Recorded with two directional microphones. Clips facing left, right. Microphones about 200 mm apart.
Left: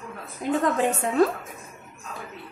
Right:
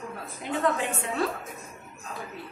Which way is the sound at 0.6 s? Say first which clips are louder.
Left 3 dB; 40° left (ahead or behind).